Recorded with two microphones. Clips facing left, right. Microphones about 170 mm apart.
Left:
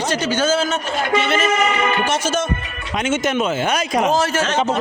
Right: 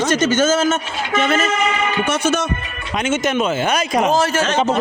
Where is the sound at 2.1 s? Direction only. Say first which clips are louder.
Right 2 dB; 60° right (ahead or behind).